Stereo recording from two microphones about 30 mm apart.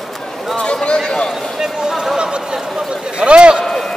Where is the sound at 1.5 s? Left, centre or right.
Centre.